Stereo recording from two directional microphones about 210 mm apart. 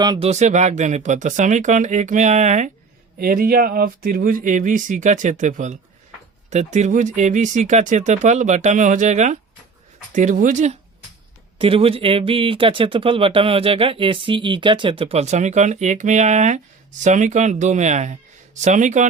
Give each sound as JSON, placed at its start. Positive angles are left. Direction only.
{"t": 0.0, "sound": "speech", "side_deg": -20}
{"t": 0.3, "sound": "speech", "side_deg": -35}
{"t": 3.2, "sound": "speech", "side_deg": -45}
{"t": 11.6, "sound": "speech", "side_deg": -25}